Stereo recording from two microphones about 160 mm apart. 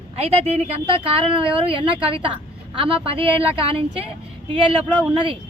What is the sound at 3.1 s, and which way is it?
Speech, 35° right (ahead or behind).